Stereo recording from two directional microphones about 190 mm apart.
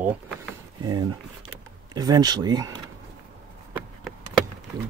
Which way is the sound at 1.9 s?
20° right (ahead or behind).